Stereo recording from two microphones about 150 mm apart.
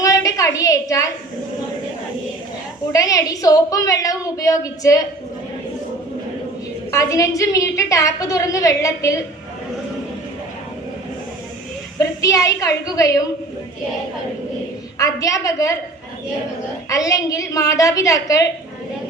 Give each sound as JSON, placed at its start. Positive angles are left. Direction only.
{"t": 0.0, "sound": "a sound", "side_deg": 20}
{"t": 2.9, "sound": "a woman's voice", "side_deg": 20}
{"t": 6.9, "sound": "a woman's voice", "side_deg": 20}
{"t": 11.9, "sound": "a woman's voice", "side_deg": 20}
{"t": 14.9, "sound": "a woman's voice", "side_deg": 20}
{"t": 16.9, "sound": "a woman's voice", "side_deg": 20}